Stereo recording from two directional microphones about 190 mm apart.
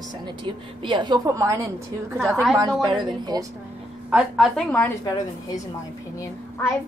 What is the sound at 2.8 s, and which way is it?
Speech, 20° right (ahead or behind).